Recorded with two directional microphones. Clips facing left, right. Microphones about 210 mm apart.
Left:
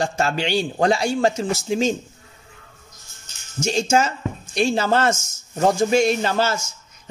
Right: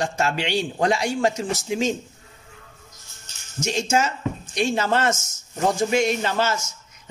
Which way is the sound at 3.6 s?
30° left (ahead or behind).